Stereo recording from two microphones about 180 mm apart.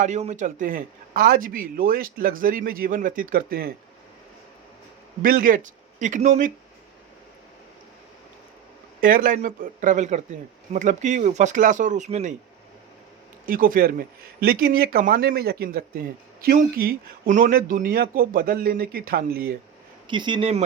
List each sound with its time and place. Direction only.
0.0 s a man's voice: 40° right (ahead or behind); by 3.7 s 55° right (ahead or behind)
5.2 s a man's voice: 50° right (ahead or behind)
9.0 s a man's voice: 50° right (ahead or behind)
13.4 s a man's voice: 50° right (ahead or behind)
20.1 s speech: 25° right (ahead or behind)